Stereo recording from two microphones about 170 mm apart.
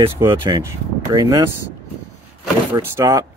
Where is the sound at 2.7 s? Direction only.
20° right (ahead or behind).